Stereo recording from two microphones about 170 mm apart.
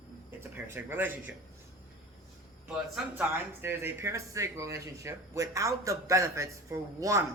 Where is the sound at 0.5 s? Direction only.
10° right (ahead or behind).